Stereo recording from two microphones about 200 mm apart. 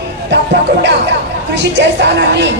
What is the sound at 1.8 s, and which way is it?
Speech, 60° right (ahead or behind).